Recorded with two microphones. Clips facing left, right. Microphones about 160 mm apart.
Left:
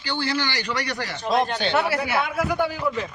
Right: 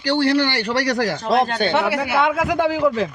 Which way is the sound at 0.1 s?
70° right (ahead or behind).